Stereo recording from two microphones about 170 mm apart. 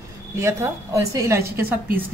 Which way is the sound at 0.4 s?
15° right (ahead or behind).